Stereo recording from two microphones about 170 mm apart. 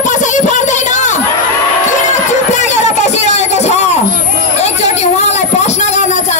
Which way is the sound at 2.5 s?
40° left (ahead or behind).